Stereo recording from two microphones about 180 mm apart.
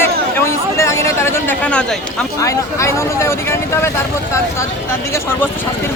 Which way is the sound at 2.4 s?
15° left (ahead or behind).